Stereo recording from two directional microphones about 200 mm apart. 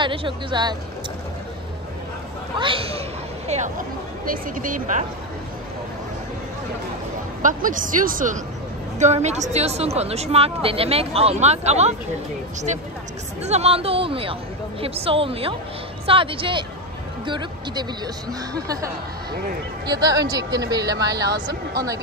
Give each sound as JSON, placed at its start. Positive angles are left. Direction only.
{"t": 0.0, "sound": "speech", "side_deg": -25}
{"t": 2.5, "sound": "speech", "side_deg": -25}
{"t": 7.4, "sound": "speech", "side_deg": -40}
{"t": 13.5, "sound": "speech", "side_deg": -30}
{"t": 19.3, "sound": "speech", "side_deg": -45}
{"t": 19.9, "sound": "speech", "side_deg": -20}